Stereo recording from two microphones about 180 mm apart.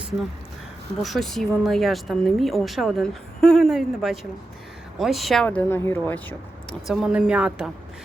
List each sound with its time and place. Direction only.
1.0 s a woman's voice: centre (ahead or behind)
6.8 s a woman's voice: centre (ahead or behind)